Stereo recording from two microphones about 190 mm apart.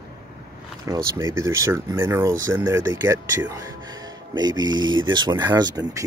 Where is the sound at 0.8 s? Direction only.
15° right (ahead or behind).